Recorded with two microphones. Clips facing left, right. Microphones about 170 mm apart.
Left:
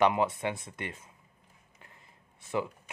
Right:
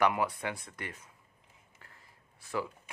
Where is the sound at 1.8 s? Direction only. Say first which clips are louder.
Left 3 dB; 20° left (ahead or behind).